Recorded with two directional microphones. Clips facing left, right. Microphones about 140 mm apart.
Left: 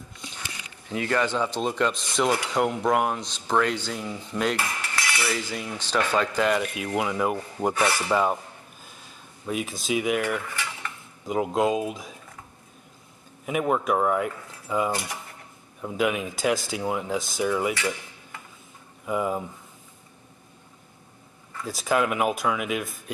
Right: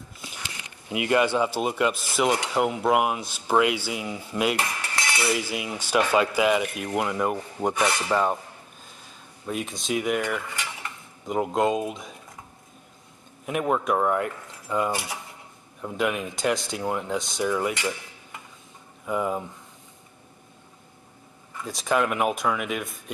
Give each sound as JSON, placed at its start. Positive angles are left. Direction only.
{"t": 0.4, "sound": "speech", "side_deg": -15}
{"t": 2.5, "sound": "cutlery", "side_deg": -5}
{"t": 4.6, "sound": "cutlery", "side_deg": -20}
{"t": 7.0, "sound": "speech", "side_deg": 0}
{"t": 7.7, "sound": "filing", "side_deg": -20}
{"t": 8.1, "sound": "speech", "side_deg": 5}
{"t": 9.5, "sound": "speech", "side_deg": 5}
{"t": 13.5, "sound": "speech", "side_deg": 5}
{"t": 14.9, "sound": "cutlery", "side_deg": -10}
{"t": 15.8, "sound": "speech", "side_deg": 0}
{"t": 19.0, "sound": "speech", "side_deg": 5}
{"t": 21.6, "sound": "speech", "side_deg": 5}